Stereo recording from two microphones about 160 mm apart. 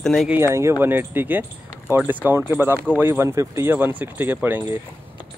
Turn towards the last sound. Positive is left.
turn(degrees=-15)  # may be behind; listen again after turning